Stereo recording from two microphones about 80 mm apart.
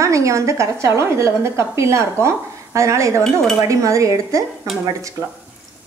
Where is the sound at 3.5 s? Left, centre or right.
Right.